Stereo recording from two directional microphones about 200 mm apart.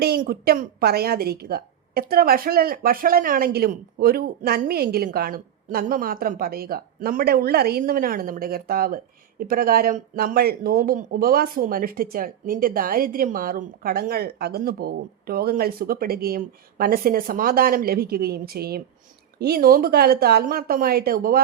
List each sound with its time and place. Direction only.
0.3 s speech: 50° right (ahead or behind)